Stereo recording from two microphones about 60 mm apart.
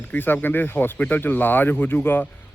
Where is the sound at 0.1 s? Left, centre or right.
Left.